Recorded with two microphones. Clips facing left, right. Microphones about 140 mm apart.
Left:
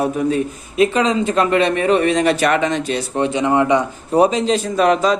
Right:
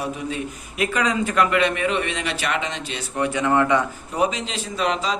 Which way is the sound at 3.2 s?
20° left (ahead or behind).